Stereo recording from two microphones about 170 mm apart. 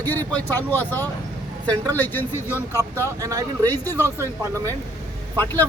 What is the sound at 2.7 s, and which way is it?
Speech, 15° right (ahead or behind).